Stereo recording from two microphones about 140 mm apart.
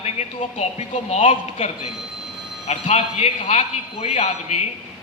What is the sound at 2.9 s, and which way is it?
A man's voice, 50° left (ahead or behind).